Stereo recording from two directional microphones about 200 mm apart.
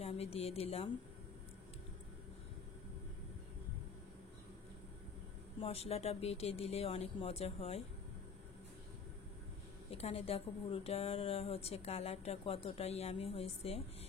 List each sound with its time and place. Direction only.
0.0 s speech: 30° left (ahead or behind)
5.6 s a woman's voice: 30° left (ahead or behind)
9.8 s a woman's voice: 30° left (ahead or behind)